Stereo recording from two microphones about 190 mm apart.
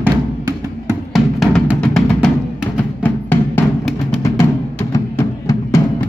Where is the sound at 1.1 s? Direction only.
Centre (ahead or behind).